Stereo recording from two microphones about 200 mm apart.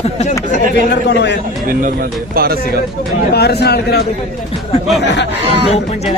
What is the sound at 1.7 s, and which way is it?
Speech, 45° right (ahead or behind).